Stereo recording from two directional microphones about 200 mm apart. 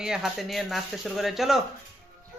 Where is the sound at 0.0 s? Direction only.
5° right (ahead or behind).